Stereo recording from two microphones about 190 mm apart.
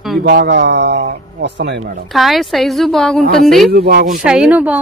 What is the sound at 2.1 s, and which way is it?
A woman's voice, centre (ahead or behind).